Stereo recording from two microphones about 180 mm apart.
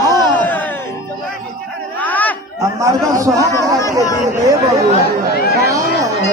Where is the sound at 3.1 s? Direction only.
20° right (ahead or behind).